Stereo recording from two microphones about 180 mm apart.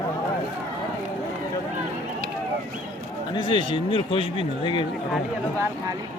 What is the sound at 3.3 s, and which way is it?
Speech, 25° left (ahead or behind).